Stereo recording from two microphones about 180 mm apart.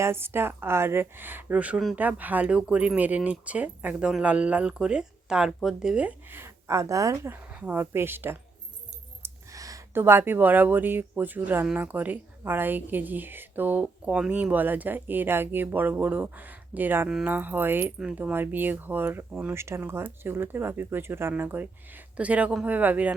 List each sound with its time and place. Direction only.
0.0 s speech: 15° right (ahead or behind)